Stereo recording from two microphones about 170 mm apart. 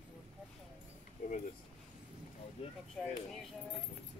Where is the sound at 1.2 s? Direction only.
50° left (ahead or behind).